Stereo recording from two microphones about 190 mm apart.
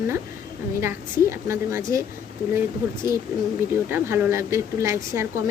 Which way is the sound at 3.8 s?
10° right (ahead or behind).